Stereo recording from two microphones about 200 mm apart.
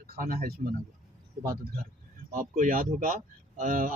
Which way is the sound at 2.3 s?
40° right (ahead or behind).